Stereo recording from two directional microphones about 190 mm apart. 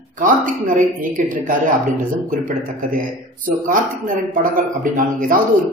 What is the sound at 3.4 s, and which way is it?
Speech, 45° right (ahead or behind).